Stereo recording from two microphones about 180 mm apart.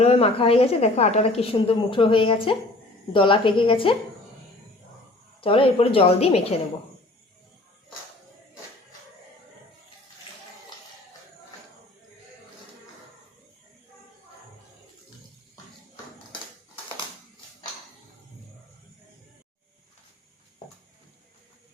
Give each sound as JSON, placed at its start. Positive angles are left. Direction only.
{"t": 0.0, "sound": "a woman's voice", "side_deg": 35}
{"t": 5.4, "sound": "a woman's voice", "side_deg": 30}